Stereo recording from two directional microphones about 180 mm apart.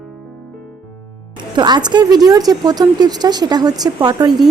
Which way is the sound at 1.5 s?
25° right (ahead or behind).